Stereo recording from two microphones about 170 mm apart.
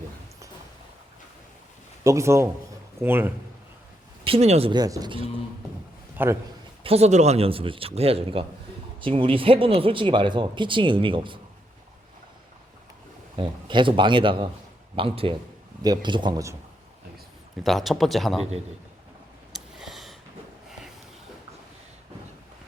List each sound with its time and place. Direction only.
2.0 s a man's voice: 15° right (ahead or behind)
4.3 s a man's voice: 40° right (ahead or behind)
4.7 s speech: 25° right (ahead or behind)
6.2 s a man's voice: 10° right (ahead or behind)
6.8 s a man's voice: 40° right (ahead or behind)
13.3 s a man's voice: 30° right (ahead or behind)
17.6 s speech: centre (ahead or behind)
19.5 s a sound: centre (ahead or behind)